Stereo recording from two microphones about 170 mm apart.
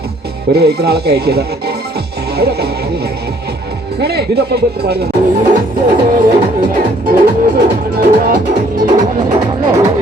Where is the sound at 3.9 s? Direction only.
70° right (ahead or behind).